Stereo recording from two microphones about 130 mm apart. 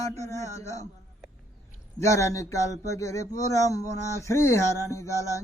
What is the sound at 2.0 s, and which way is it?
Speech, 25° left (ahead or behind).